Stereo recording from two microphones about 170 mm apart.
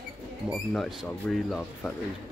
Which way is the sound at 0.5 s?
Centre (ahead or behind).